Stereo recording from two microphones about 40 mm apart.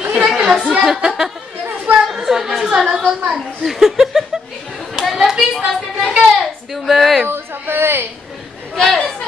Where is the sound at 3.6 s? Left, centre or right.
Centre.